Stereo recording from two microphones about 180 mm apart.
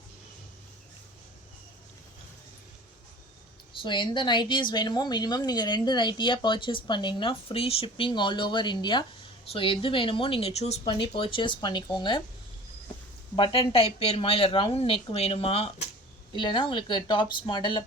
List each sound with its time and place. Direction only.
3.8 s a woman's voice: 25° left (ahead or behind)
13.3 s a woman's voice: 30° left (ahead or behind)